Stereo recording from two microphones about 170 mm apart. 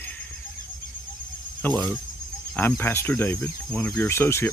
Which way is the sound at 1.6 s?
10° left (ahead or behind).